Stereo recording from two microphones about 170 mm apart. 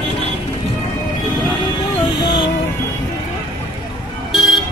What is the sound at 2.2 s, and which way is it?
Music, 30° left (ahead or behind).